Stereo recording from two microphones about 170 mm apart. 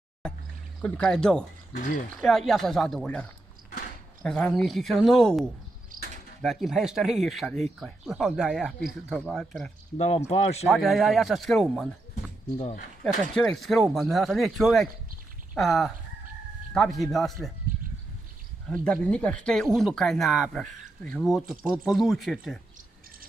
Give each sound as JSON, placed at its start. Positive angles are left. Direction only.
{"t": 0.7, "sound": "speech", "side_deg": 5}
{"t": 1.8, "sound": "speech", "side_deg": 50}
{"t": 2.2, "sound": "speech", "side_deg": 0}
{"t": 6.4, "sound": "speech", "side_deg": 0}
{"t": 9.9, "sound": "speech", "side_deg": 40}
{"t": 10.7, "sound": "speech", "side_deg": 0}
{"t": 13.0, "sound": "speech", "side_deg": 0}
{"t": 18.7, "sound": "speech", "side_deg": 5}